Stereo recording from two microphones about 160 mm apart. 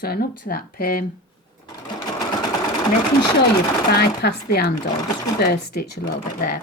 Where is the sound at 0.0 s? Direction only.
70° left (ahead or behind).